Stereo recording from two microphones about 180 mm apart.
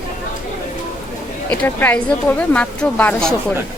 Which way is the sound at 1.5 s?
10° left (ahead or behind).